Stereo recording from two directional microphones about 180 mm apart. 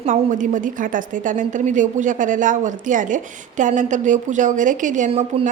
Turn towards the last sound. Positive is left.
turn(degrees=-40)  # may be behind; listen again after turning